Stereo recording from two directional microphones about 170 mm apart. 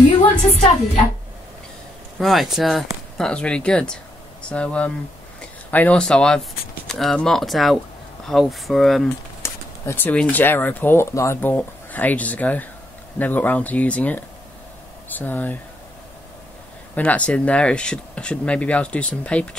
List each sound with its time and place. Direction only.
0.4 s a woman's voice: 40° left (ahead or behind)
2.1 s speech: centre (ahead or behind)
9.4 s speech: 15° left (ahead or behind)
16.9 s speech: 10° left (ahead or behind)